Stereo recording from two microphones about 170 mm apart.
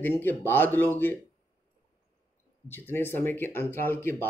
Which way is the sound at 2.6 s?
10° left (ahead or behind).